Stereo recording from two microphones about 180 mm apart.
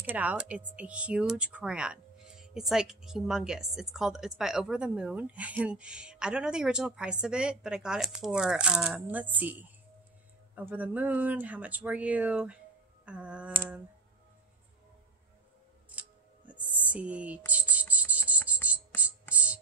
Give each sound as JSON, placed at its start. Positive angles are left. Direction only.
{"t": 0.1, "sound": "speech", "side_deg": -10}
{"t": 15.9, "sound": "a sound", "side_deg": -10}
{"t": 17.5, "sound": "cricket", "side_deg": -10}
{"t": 18.5, "sound": "music", "side_deg": -5}